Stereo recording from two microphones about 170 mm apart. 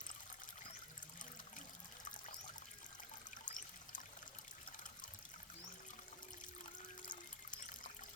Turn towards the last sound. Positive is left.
turn(degrees=50)  # may be behind; listen again after turning